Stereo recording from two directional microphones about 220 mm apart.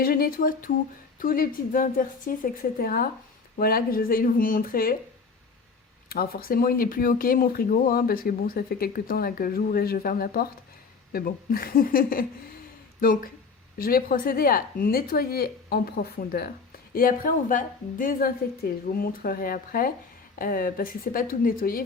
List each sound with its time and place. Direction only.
0.0 s speech: 40° left (ahead or behind)
6.1 s a woman's voice: 45° left (ahead or behind)